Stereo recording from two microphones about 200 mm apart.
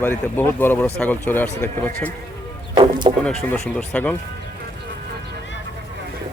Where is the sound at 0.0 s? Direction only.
10° left (ahead or behind).